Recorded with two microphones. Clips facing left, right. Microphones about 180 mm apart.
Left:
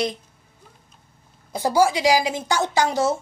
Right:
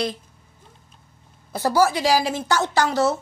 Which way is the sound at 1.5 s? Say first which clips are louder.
Even; 15° left (ahead or behind).